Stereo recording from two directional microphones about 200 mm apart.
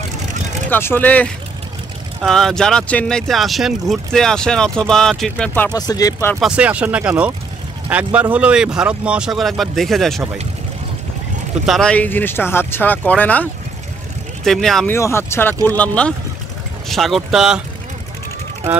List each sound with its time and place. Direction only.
0.7 s speech: 10° left (ahead or behind)
5.6 s speech: 20° left (ahead or behind)
6.4 s speech: 5° right (ahead or behind)
11.6 s speech: centre (ahead or behind)
15.0 s speech: 15° left (ahead or behind); by 17.6 s centre (ahead or behind)